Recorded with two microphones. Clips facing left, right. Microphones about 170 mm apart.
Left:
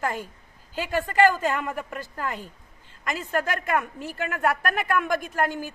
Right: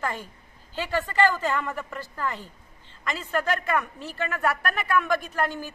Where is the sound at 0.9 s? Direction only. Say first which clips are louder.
Left 3 dB; 45° left (ahead or behind).